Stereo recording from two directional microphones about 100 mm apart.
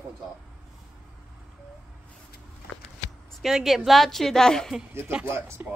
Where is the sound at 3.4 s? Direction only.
5° right (ahead or behind).